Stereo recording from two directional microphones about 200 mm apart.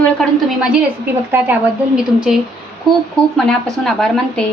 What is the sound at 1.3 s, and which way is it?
A woman's voice, 10° right (ahead or behind).